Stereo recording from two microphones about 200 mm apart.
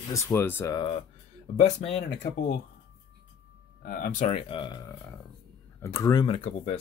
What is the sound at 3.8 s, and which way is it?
Speech, 45° left (ahead or behind).